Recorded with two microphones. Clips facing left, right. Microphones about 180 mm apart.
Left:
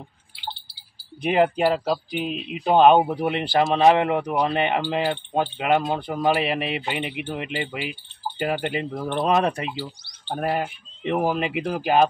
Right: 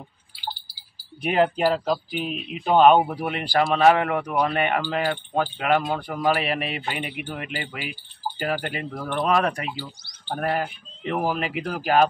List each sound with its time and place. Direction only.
1.6 s speech: 5° left (ahead or behind)
2.1 s speech: 20° left (ahead or behind)
10.2 s speech: 5° left (ahead or behind)
11.1 s speech: 20° left (ahead or behind)